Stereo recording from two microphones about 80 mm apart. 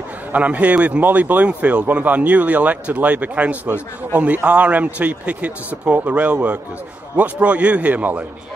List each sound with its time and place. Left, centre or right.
0.3 s a man's voice: centre